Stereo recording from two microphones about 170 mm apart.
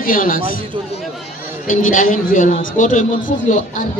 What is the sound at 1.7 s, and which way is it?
A woman's voice, 50° left (ahead or behind).